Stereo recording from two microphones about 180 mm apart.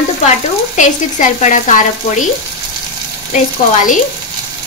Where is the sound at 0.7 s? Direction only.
45° left (ahead or behind).